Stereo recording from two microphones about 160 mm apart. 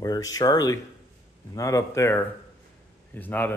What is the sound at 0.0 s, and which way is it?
Speech, 25° left (ahead or behind).